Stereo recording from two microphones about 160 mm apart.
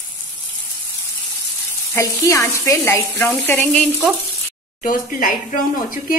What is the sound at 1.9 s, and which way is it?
Speech, 20° left (ahead or behind).